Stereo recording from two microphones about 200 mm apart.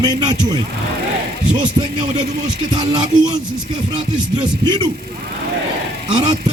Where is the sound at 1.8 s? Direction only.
25° right (ahead or behind).